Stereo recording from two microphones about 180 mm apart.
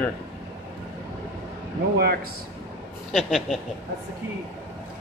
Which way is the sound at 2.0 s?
60° right (ahead or behind).